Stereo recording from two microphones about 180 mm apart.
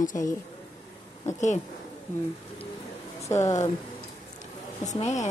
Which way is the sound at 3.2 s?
15° left (ahead or behind).